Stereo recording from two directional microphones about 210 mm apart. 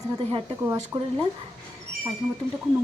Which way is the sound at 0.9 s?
15° right (ahead or behind).